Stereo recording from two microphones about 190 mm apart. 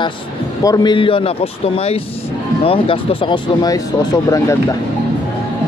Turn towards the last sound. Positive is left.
turn(degrees=15)  # may be behind; listen again after turning